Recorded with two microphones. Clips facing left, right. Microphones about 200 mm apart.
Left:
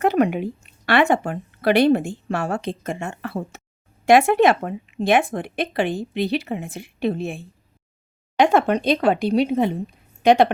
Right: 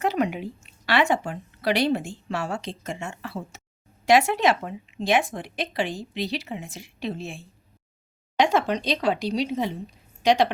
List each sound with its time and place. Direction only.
0.0 s a woman's voice: 55° left (ahead or behind)